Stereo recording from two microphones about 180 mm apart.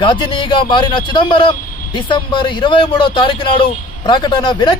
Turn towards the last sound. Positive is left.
turn(degrees=25)  # may be behind; listen again after turning